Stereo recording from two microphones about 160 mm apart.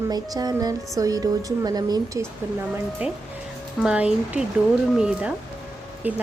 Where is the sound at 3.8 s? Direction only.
5° right (ahead or behind).